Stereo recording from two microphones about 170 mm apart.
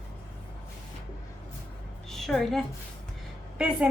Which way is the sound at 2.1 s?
Centre (ahead or behind).